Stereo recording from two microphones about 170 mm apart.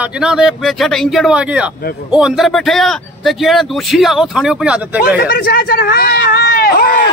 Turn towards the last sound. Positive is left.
turn(degrees=60)  # may be behind; listen again after turning